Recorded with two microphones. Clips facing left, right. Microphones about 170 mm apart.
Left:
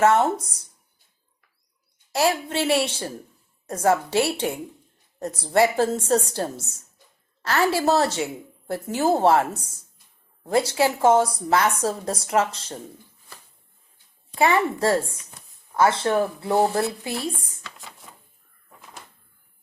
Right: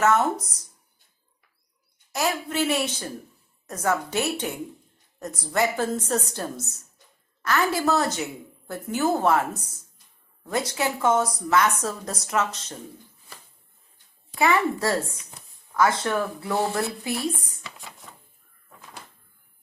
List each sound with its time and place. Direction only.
0.0 s a woman's voice: 30° left (ahead or behind)
2.1 s a woman's voice: 30° left (ahead or behind)
14.3 s a woman's voice: 30° left (ahead or behind)
17.6 s a sound: centre (ahead or behind)